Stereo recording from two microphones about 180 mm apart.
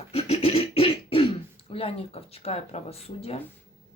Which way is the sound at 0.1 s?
35° left (ahead or behind).